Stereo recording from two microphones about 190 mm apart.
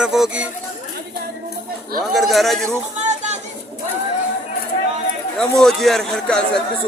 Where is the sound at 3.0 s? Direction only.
40° right (ahead or behind).